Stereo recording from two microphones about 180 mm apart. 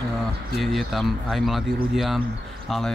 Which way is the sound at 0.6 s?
Centre (ahead or behind).